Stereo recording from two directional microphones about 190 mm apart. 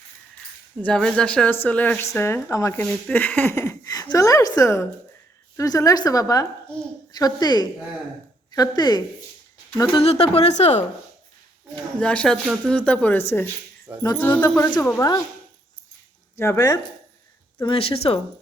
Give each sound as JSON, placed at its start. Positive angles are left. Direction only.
{"t": 0.8, "sound": "a woman's voice", "side_deg": 5}
{"t": 11.9, "sound": "speech", "side_deg": 5}
{"t": 16.4, "sound": "speech", "side_deg": 15}
{"t": 17.6, "sound": "a woman's voice", "side_deg": 30}